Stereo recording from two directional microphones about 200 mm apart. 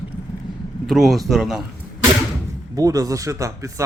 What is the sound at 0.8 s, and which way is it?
Speech, centre (ahead or behind).